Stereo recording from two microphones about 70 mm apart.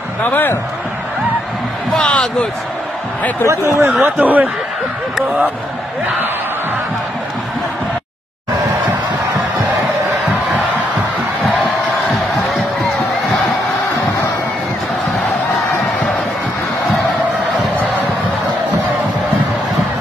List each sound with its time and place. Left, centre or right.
0.2 s a man's voice: left
2.0 s speech: centre
3.4 s speech: right
4.0 s speech: right